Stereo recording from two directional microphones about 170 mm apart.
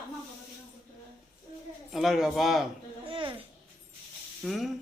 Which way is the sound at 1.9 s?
Centre (ahead or behind).